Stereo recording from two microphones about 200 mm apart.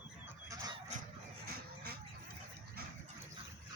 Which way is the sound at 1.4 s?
55° right (ahead or behind).